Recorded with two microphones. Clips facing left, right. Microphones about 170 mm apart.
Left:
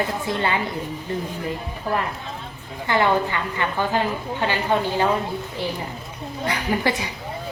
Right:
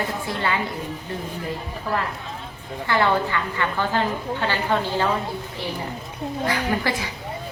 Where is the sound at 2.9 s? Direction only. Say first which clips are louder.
Left 1 dB; 20° left (ahead or behind).